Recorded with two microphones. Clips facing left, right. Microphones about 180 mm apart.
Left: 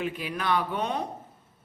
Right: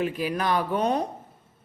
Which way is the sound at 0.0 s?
40° right (ahead or behind).